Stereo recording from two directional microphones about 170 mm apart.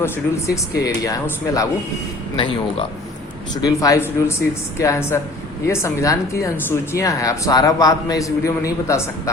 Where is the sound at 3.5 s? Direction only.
20° left (ahead or behind).